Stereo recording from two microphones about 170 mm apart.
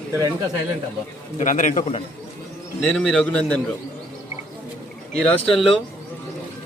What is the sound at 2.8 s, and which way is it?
Speech, 5° left (ahead or behind).